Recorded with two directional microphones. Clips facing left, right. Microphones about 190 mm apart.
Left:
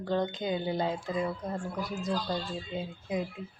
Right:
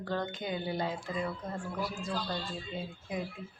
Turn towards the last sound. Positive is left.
turn(degrees=20)  # may be behind; listen again after turning